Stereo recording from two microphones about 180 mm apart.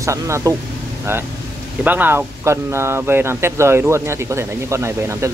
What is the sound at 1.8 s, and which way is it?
Speech, 10° right (ahead or behind).